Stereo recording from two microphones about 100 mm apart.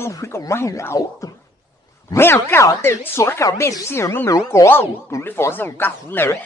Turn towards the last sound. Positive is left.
turn(degrees=25)  # may be behind; listen again after turning